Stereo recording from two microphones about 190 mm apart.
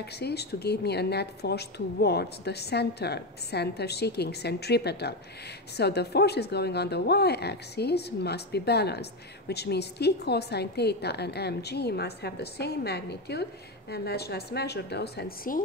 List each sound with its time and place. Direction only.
0.2 s a woman's voice: 60° left (ahead or behind)